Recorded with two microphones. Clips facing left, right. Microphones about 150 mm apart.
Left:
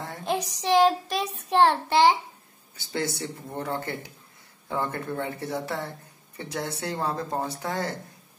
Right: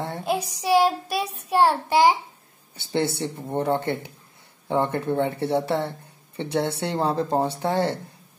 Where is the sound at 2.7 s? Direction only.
25° right (ahead or behind).